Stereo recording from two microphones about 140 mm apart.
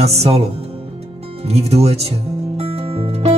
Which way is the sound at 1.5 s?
50° right (ahead or behind).